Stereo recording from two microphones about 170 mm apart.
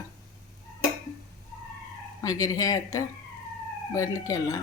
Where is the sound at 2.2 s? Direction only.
20° left (ahead or behind).